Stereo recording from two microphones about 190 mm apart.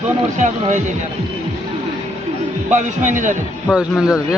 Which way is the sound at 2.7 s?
40° right (ahead or behind).